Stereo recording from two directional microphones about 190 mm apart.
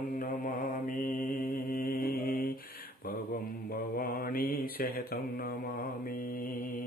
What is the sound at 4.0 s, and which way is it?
Mantra, 50° left (ahead or behind).